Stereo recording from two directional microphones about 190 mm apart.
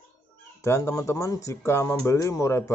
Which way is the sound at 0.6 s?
15° left (ahead or behind).